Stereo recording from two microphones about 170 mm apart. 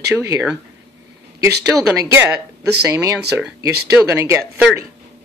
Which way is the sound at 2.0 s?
15° right (ahead or behind).